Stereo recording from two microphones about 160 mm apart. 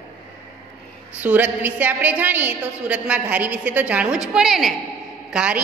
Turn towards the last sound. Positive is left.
turn(degrees=-5)  # may be behind; listen again after turning